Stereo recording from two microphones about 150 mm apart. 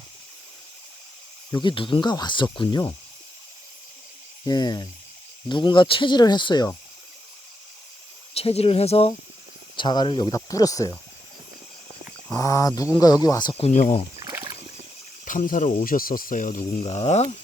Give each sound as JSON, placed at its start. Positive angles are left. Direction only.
{"t": 1.5, "sound": "speech", "side_deg": 30}
{"t": 4.4, "sound": "speech", "side_deg": 30}
{"t": 8.3, "sound": "speech", "side_deg": 40}
{"t": 9.7, "sound": "speech", "side_deg": 30}
{"t": 12.4, "sound": "speech", "side_deg": 20}
{"t": 13.6, "sound": "speech", "side_deg": 50}
{"t": 15.2, "sound": "speech", "side_deg": 60}
{"t": 16.8, "sound": "speech", "side_deg": 45}